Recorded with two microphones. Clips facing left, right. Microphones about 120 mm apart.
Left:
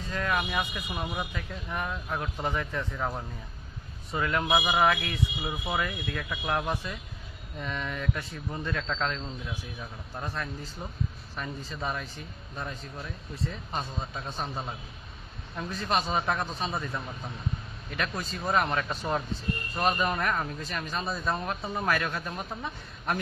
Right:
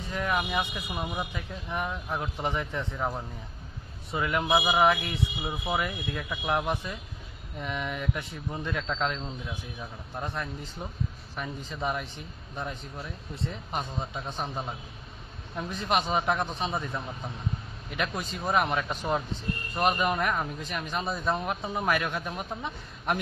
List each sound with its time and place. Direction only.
0.0 s a man's voice: 15° right (ahead or behind)
0.9 s speech: 5° right (ahead or behind)
1.3 s a man's voice: 15° right (ahead or behind)
4.1 s a man's voice: 15° right (ahead or behind)
16.7 s a man's voice: 5° right (ahead or behind)